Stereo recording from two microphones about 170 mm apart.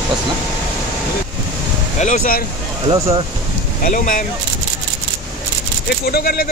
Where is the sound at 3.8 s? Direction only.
50° left (ahead or behind).